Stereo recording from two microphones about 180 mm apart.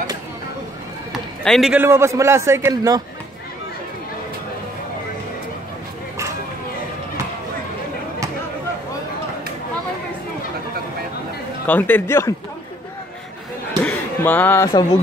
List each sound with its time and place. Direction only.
1.1 s run: centre (ahead or behind)
1.8 s a man's voice: 15° right (ahead or behind)
11.6 s speech: 10° left (ahead or behind)
13.8 s a sound: 10° left (ahead or behind)
14.7 s speech: 30° left (ahead or behind)